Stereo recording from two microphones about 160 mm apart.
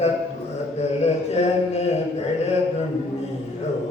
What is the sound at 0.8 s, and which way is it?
Mantra, 40° left (ahead or behind).